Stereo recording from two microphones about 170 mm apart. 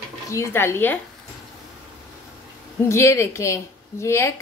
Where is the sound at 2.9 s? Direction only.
15° left (ahead or behind).